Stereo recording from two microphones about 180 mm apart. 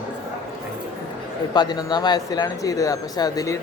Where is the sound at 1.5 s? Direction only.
25° left (ahead or behind).